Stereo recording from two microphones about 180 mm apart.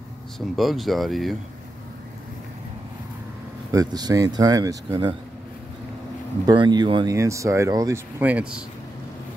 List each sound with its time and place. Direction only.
0.6 s speech: centre (ahead or behind)
3.7 s speech: 20° right (ahead or behind)
6.4 s speech: 25° right (ahead or behind)
8.2 s speech: 5° right (ahead or behind)